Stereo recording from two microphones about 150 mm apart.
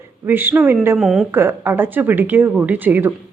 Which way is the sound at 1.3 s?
15° right (ahead or behind).